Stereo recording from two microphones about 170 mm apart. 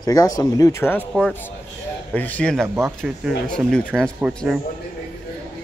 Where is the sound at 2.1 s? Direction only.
10° left (ahead or behind).